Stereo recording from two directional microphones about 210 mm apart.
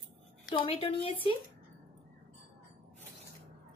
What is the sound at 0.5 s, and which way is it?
Speech, 25° left (ahead or behind).